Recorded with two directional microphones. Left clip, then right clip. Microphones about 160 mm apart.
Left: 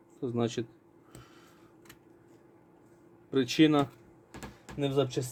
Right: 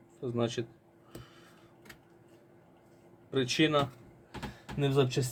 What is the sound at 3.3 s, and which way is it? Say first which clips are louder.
Speech: left 3 dB; 60° left (ahead or behind).